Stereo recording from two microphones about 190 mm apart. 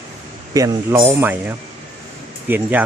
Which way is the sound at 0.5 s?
15° right (ahead or behind).